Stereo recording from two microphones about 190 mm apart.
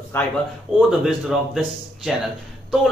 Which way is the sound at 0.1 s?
10° left (ahead or behind).